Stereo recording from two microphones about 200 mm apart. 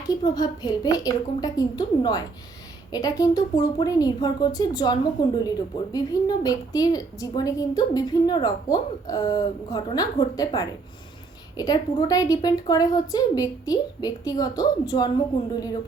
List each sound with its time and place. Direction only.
0.1 s a woman's voice: 20° left (ahead or behind)